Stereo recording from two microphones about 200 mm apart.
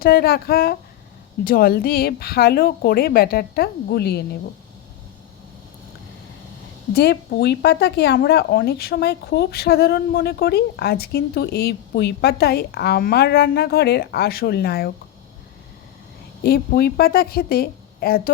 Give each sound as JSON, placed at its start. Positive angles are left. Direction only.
{"t": 0.0, "sound": "speech", "side_deg": 50}
{"t": 6.9, "sound": "speech", "side_deg": 55}
{"t": 16.4, "sound": "speech", "side_deg": 50}